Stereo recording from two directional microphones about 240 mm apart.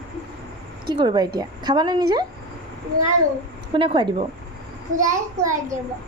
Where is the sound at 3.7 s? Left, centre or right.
Right.